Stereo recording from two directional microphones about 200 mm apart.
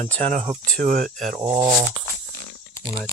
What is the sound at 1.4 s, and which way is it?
Speech, 15° right (ahead or behind).